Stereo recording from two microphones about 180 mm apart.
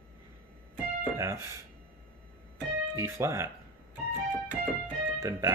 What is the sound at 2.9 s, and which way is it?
Speech, 15° right (ahead or behind).